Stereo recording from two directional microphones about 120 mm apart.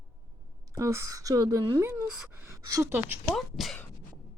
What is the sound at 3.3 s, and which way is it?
Speech, centre (ahead or behind).